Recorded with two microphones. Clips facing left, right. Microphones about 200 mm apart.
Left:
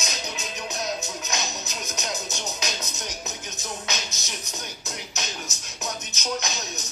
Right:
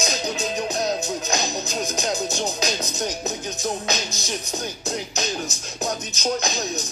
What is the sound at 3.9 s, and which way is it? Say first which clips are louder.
Music: right 7 dB; 30° right (ahead or behind).